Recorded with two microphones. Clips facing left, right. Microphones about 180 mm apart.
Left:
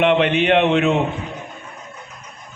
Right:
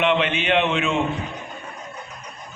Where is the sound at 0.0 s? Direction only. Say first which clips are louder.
Left 5 dB; 55° left (ahead or behind).